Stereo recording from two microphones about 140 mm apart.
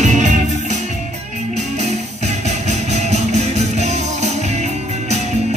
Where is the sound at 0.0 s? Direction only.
60° right (ahead or behind).